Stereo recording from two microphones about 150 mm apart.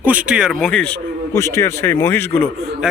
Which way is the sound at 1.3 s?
20° left (ahead or behind).